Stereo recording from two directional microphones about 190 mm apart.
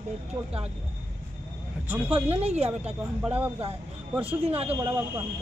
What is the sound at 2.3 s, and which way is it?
Speech, 35° right (ahead or behind).